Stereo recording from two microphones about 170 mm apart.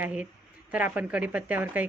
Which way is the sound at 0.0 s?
5° right (ahead or behind).